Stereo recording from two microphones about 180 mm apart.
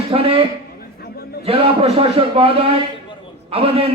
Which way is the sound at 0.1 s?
30° right (ahead or behind).